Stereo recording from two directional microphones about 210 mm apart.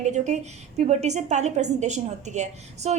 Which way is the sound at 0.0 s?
35° right (ahead or behind).